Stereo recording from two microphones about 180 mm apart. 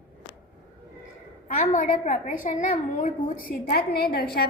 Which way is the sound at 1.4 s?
45° left (ahead or behind).